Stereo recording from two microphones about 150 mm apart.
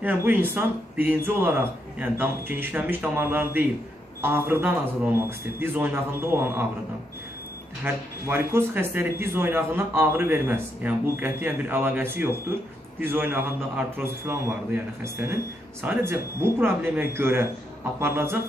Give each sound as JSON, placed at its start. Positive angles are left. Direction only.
{"t": 0.0, "sound": "speech", "side_deg": -10}
{"t": 7.8, "sound": "speech", "side_deg": -15}